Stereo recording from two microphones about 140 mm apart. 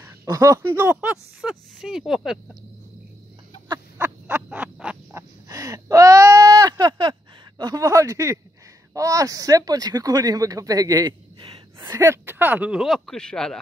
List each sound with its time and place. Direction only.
0.0 s speech: 20° right (ahead or behind); by 2.3 s 5° right (ahead or behind)
4.0 s owl: 15° right (ahead or behind)
5.1 s a sound: 25° right (ahead or behind)
8.9 s speech: 25° right (ahead or behind)
12.8 s speech: centre (ahead or behind)